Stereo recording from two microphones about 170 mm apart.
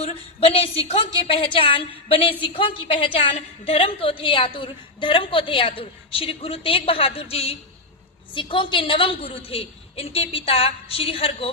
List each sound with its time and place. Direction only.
0.0 s a woman's voice: 35° left (ahead or behind)